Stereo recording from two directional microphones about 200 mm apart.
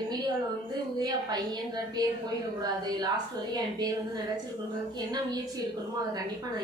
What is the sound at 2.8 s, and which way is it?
A woman's voice, 20° right (ahead or behind).